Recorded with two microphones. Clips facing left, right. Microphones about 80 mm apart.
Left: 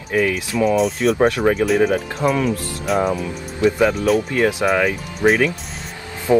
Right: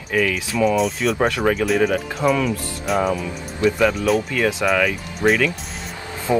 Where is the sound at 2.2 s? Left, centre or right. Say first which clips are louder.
Right 1 dB; left.